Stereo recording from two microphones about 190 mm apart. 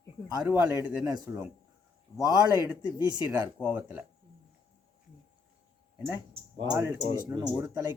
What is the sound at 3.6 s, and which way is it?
Speech, 10° right (ahead or behind).